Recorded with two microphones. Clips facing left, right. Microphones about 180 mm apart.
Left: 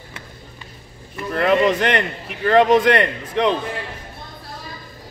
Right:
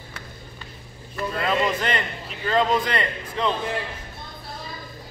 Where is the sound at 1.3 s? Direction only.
70° left (ahead or behind).